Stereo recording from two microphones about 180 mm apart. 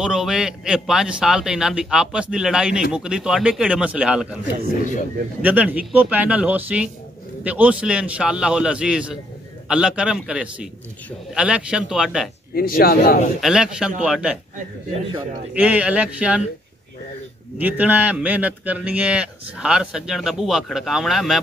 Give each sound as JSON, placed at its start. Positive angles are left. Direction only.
{"t": 0.0, "sound": "a man's voice", "side_deg": -5}
{"t": 12.5, "sound": "a man's voice", "side_deg": 55}
{"t": 13.4, "sound": "a man's voice", "side_deg": -5}
{"t": 15.5, "sound": "speech", "side_deg": -10}
{"t": 17.6, "sound": "a man's voice", "side_deg": -10}